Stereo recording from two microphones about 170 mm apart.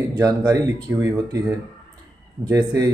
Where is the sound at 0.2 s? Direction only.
20° right (ahead or behind).